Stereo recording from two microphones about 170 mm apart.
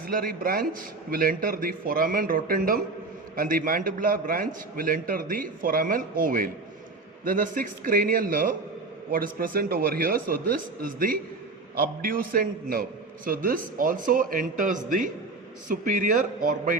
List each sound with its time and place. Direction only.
0.0 s a man's voice: 55° right (ahead or behind)